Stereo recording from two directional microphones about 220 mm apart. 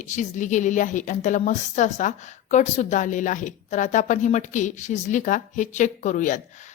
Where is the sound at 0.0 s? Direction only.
35° left (ahead or behind).